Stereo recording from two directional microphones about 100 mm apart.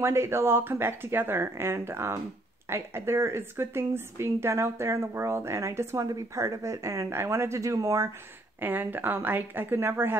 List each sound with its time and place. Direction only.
0.0 s speech: 25° right (ahead or behind)
8.5 s speech: 20° right (ahead or behind)